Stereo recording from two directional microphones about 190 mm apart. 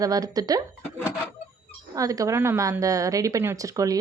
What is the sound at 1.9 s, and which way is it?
Speech, 15° right (ahead or behind).